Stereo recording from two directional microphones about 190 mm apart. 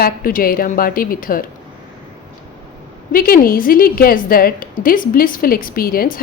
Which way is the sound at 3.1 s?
50° left (ahead or behind).